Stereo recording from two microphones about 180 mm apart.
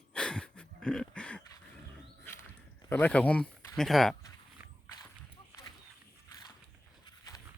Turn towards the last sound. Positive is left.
turn(degrees=20)  # may be behind; listen again after turning